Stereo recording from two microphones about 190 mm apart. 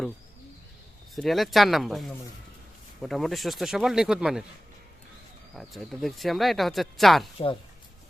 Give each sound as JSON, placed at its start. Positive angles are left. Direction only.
{"t": 1.1, "sound": "speech", "side_deg": 0}
{"t": 5.5, "sound": "speech", "side_deg": 0}